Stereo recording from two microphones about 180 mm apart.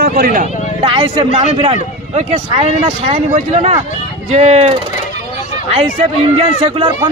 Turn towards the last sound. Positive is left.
turn(degrees=-25)  # may be behind; listen again after turning